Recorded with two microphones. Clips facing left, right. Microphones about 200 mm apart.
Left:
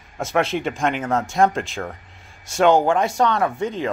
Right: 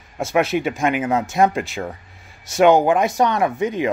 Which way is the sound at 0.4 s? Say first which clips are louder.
Right 2 dB; 5° right (ahead or behind).